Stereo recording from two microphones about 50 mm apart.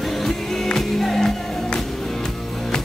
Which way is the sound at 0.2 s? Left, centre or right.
Centre.